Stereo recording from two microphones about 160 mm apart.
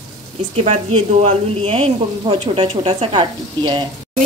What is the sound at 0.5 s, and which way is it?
A woman's voice, 45° right (ahead or behind).